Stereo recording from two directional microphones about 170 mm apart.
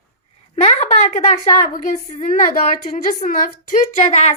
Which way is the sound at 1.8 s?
45° left (ahead or behind).